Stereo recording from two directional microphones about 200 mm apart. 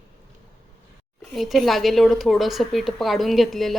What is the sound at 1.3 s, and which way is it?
A woman's voice, centre (ahead or behind).